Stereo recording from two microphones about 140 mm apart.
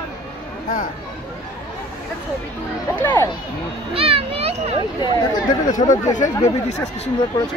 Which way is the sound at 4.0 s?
45° right (ahead or behind).